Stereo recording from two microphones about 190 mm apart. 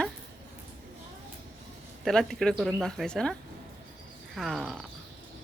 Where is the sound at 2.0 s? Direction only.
5° left (ahead or behind).